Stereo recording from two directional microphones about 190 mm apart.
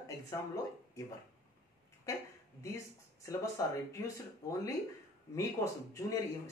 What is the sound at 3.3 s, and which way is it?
Speech, 15° left (ahead or behind).